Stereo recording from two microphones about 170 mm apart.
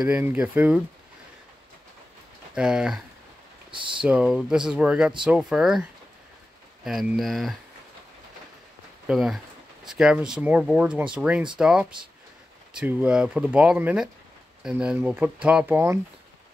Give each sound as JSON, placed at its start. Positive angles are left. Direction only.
{"t": 0.0, "sound": "speech", "side_deg": -10}
{"t": 2.5, "sound": "speech", "side_deg": -5}
{"t": 3.7, "sound": "speech", "side_deg": -30}
{"t": 4.0, "sound": "speech", "side_deg": -5}
{"t": 9.0, "sound": "speech", "side_deg": 0}